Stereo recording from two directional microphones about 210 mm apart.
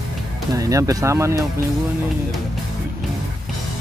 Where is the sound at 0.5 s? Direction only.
15° right (ahead or behind).